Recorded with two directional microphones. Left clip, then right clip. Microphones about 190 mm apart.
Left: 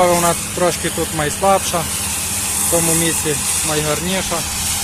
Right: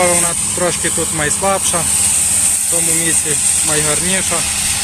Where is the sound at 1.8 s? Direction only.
45° right (ahead or behind).